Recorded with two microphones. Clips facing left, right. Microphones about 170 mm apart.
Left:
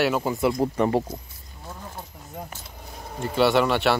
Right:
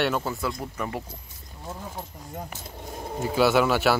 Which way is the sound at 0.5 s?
35° left (ahead or behind).